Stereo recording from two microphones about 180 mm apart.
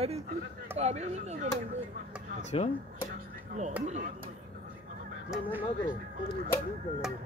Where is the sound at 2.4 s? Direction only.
35° left (ahead or behind).